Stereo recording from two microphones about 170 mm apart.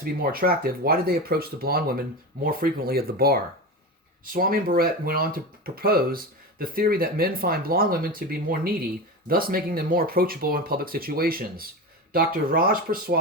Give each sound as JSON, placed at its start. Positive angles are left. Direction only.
{"t": 0.0, "sound": "speech", "side_deg": -60}